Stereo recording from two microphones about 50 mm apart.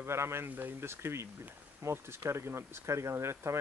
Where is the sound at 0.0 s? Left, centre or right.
Right.